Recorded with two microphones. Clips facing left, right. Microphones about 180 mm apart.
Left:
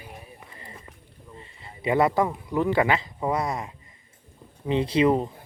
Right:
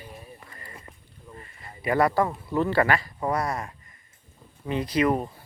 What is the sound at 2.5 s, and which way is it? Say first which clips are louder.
Speech: even; 15° left (ahead or behind).